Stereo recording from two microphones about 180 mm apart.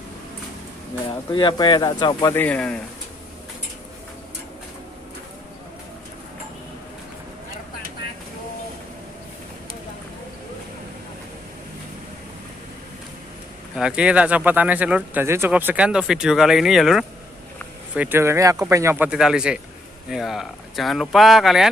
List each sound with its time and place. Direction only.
1.3 s speech: 25° left (ahead or behind)
2.2 s speech: 10° left (ahead or behind)
13.7 s speech: 5° right (ahead or behind)